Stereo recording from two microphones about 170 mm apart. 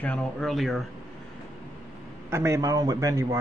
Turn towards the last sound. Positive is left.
turn(degrees=-20)  # may be behind; listen again after turning